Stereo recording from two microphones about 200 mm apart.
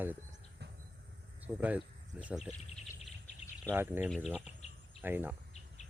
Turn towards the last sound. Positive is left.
turn(degrees=-10)  # may be behind; listen again after turning